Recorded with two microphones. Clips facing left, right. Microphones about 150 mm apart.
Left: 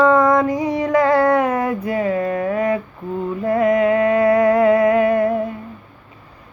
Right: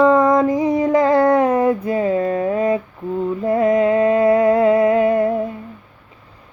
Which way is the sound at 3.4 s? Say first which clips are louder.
Even; 30° right (ahead or behind).